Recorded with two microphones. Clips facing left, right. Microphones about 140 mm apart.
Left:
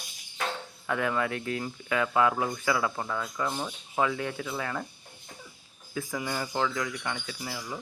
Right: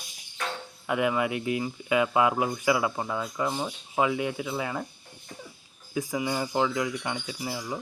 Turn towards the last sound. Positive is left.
turn(degrees=-20)  # may be behind; listen again after turning